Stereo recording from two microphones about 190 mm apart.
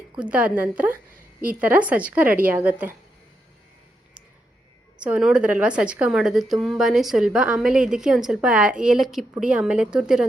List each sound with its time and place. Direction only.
0.2 s a woman's voice: 5° right (ahead or behind)
5.0 s a woman's voice: 5° right (ahead or behind)